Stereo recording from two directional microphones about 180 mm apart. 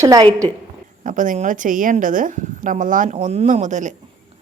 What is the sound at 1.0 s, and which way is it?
Speech, 45° right (ahead or behind).